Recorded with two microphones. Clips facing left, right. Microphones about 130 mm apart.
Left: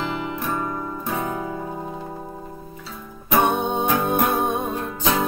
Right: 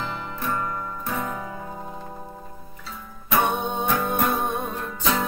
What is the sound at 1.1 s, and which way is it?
Music, 20° left (ahead or behind).